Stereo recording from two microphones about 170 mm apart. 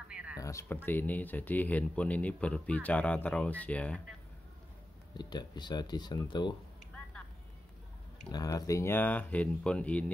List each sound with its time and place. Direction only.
0.1 s music: 10° right (ahead or behind)
0.4 s speech: 15° left (ahead or behind)
5.1 s speech: 25° left (ahead or behind)
8.3 s speech: 20° left (ahead or behind)